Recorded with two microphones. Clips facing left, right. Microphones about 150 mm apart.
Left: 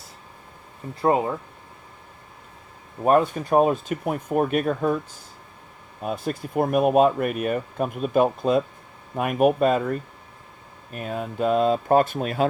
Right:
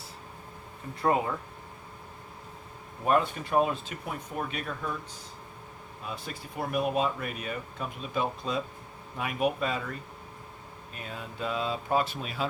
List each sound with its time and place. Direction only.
1.0 s speech: 30° left (ahead or behind)
3.0 s speech: 45° left (ahead or behind)
6.0 s speech: 55° left (ahead or behind)